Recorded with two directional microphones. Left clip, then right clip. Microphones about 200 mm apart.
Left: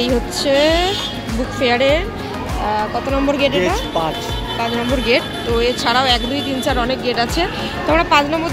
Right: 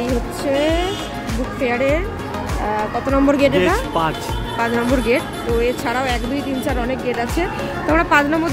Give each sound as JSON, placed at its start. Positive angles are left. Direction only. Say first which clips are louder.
{"t": 0.1, "sound": "speech", "louder": "left 4 dB", "side_deg": -10}
{"t": 3.3, "sound": "speech", "louder": "right 1 dB", "side_deg": -30}
{"t": 4.9, "sound": "speech", "louder": "left 2 dB", "side_deg": -15}
{"t": 7.9, "sound": "a woman's voice", "louder": "left 1 dB", "side_deg": -20}